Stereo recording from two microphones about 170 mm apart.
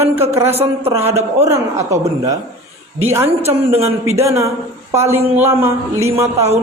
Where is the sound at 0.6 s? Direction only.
35° right (ahead or behind).